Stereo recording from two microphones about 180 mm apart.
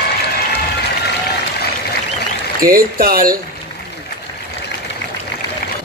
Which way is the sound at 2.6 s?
55° right (ahead or behind).